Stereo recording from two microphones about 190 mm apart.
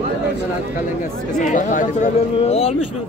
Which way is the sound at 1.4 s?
40° left (ahead or behind).